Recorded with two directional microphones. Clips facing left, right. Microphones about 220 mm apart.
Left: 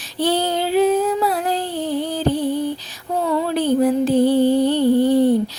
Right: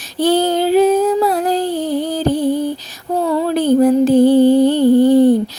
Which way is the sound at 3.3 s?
45° right (ahead or behind).